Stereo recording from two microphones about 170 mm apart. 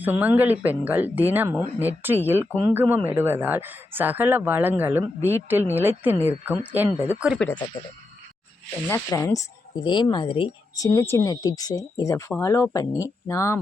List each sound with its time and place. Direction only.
0.0 s speech: 10° right (ahead or behind)
8.9 s speech: 15° left (ahead or behind); by 10.5 s 30° left (ahead or behind)
10.8 s speech: 15° left (ahead or behind)